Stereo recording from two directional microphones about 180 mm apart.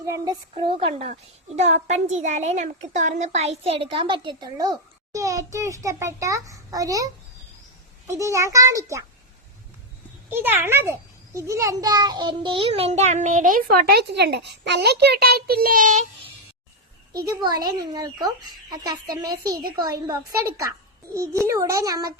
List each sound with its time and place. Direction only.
0.0 s a child's voice: 20° right (ahead or behind)
10.2 s a child's voice: 10° right (ahead or behind); by 16.0 s 45° right (ahead or behind)
17.4 s a child's voice: 20° right (ahead or behind)
21.5 s a child's voice: 20° right (ahead or behind)